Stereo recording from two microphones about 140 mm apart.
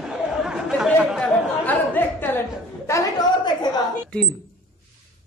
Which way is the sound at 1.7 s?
15° left (ahead or behind).